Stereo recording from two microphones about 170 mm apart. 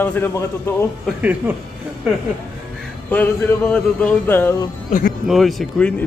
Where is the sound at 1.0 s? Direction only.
10° right (ahead or behind).